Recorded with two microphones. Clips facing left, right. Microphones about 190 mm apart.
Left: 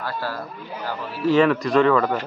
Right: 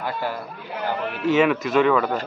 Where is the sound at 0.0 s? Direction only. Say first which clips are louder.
Right 1 dB; 20° right (ahead or behind).